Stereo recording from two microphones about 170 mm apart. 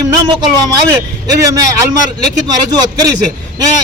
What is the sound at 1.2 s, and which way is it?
Speech, 20° right (ahead or behind).